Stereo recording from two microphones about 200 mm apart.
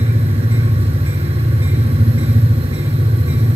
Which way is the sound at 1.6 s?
30° right (ahead or behind).